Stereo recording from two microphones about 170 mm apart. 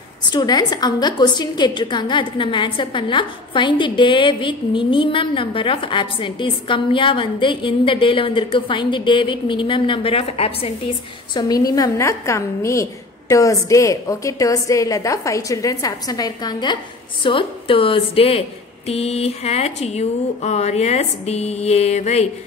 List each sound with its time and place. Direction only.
0.3 s a woman's voice: 25° left (ahead or behind)
11.3 s a woman's voice: 20° left (ahead or behind); by 22.3 s 40° left (ahead or behind)